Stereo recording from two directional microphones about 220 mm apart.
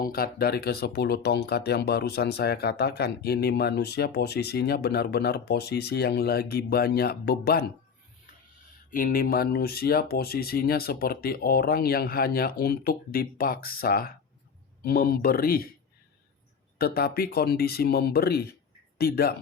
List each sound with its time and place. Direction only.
0.0 s speech: 40° left (ahead or behind)
8.9 s speech: 40° left (ahead or behind)
16.7 s speech: 45° left (ahead or behind)